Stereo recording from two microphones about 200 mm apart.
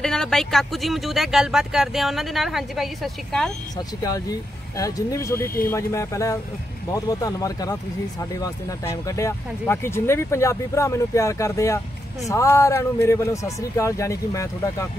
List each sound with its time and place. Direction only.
0.0 s speech: 5° left (ahead or behind)
3.7 s speech: 20° left (ahead or behind)